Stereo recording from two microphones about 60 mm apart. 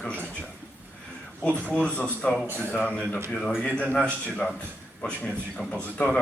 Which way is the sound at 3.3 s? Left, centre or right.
Centre.